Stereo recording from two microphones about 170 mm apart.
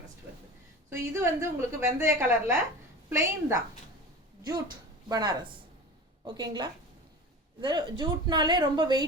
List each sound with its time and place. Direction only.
0.9 s a woman's voice: 15° right (ahead or behind)
5.0 s a woman's voice: 25° right (ahead or behind)